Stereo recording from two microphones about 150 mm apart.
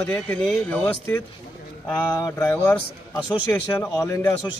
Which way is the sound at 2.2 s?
15° left (ahead or behind).